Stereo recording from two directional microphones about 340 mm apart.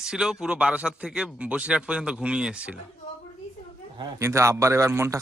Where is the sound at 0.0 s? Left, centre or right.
Centre.